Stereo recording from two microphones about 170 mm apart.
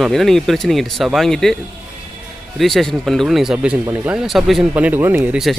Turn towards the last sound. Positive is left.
turn(degrees=0)  # may be behind; listen again after turning